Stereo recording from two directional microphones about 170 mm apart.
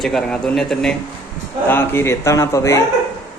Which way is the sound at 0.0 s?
5° left (ahead or behind).